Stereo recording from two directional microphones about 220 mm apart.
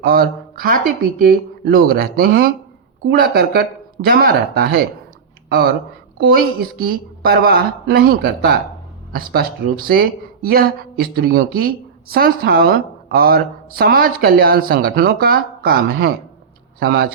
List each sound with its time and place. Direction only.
0.0 s a woman's voice: 40° right (ahead or behind)